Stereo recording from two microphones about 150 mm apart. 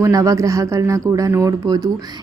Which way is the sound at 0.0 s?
20° right (ahead or behind).